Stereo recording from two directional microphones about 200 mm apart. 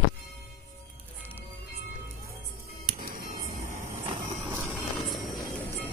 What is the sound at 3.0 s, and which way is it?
Music, 40° right (ahead or behind).